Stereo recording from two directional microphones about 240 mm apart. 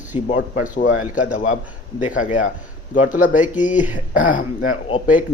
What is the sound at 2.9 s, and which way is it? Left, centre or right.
Speech, left.